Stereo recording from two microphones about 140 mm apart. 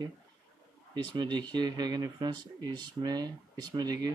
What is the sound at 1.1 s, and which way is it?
Speech, 35° right (ahead or behind).